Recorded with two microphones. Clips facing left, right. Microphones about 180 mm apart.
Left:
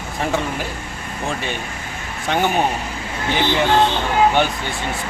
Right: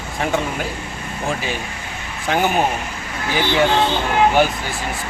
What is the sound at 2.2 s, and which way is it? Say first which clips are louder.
Speech: right 1 dB; centre (ahead or behind).